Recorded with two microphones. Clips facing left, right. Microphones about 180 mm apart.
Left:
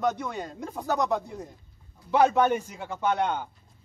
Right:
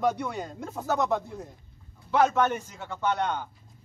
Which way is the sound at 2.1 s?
15° left (ahead or behind).